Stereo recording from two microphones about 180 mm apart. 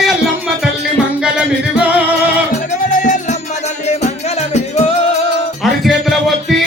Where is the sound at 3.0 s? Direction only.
45° left (ahead or behind).